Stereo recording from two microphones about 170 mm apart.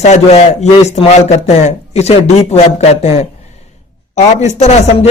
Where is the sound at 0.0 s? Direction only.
40° left (ahead or behind).